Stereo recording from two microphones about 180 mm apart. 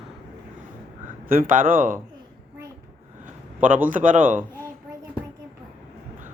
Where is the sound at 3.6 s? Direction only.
45° right (ahead or behind).